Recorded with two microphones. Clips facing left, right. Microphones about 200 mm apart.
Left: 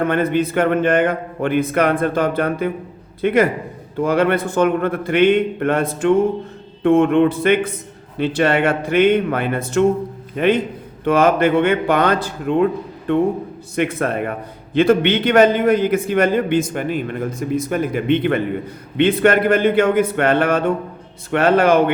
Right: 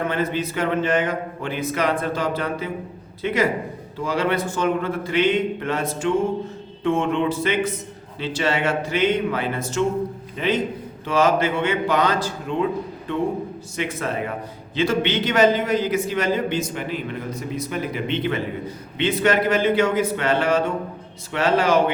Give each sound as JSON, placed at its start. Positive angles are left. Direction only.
{"t": 0.1, "sound": "a man's voice", "side_deg": 55}